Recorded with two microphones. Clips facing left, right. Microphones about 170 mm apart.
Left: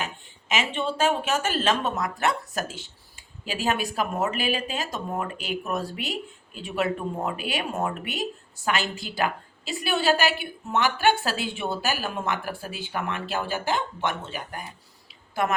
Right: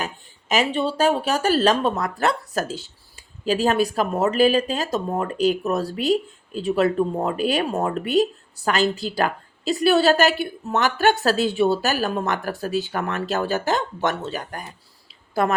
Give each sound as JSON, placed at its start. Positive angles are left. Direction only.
{"t": 0.0, "sound": "speech", "side_deg": -40}